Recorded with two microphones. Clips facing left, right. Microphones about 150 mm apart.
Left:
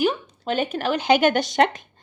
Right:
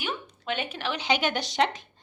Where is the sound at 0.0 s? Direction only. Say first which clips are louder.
Left 11 dB; 40° left (ahead or behind).